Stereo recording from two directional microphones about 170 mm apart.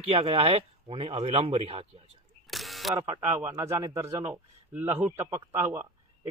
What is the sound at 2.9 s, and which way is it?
A man's voice, 20° right (ahead or behind).